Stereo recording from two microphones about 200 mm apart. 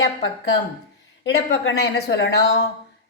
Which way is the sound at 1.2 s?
55° left (ahead or behind).